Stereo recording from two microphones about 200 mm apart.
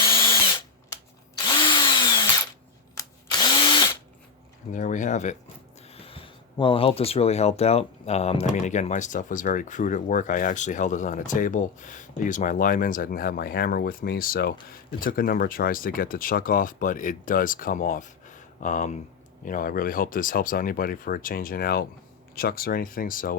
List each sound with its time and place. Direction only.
1.5 s drill: 25° left (ahead or behind)
4.7 s speech: 40° left (ahead or behind)